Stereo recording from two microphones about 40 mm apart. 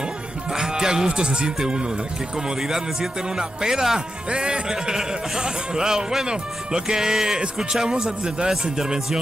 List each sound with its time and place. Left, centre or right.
0.5 s music: centre
1.6 s a man's voice: right